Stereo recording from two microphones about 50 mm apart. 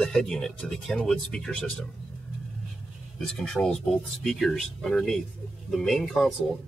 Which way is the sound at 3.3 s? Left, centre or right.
Centre.